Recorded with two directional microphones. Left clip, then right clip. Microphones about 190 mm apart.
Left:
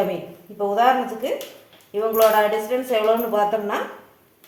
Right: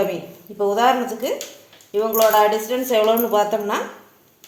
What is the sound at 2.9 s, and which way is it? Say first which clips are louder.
Speech: right 3 dB; 45° right (ahead or behind).